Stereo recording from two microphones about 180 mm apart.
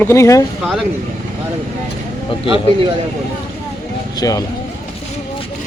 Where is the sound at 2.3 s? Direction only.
30° left (ahead or behind).